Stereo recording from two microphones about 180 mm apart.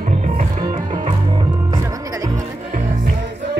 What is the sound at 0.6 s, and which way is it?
Music, 25° right (ahead or behind).